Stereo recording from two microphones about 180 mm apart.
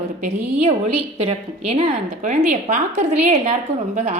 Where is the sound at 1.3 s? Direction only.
30° right (ahead or behind).